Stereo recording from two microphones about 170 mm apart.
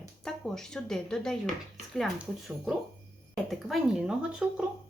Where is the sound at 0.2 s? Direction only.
5° left (ahead or behind).